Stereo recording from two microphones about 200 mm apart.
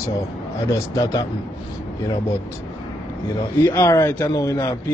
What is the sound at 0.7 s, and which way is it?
Speech, 15° left (ahead or behind).